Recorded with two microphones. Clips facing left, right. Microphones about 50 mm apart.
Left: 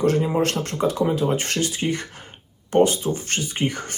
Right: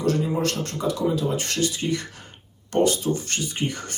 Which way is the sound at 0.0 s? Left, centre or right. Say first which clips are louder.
Left 3 dB; left.